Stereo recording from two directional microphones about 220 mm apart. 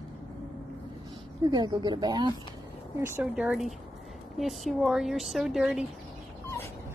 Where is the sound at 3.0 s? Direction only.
10° right (ahead or behind).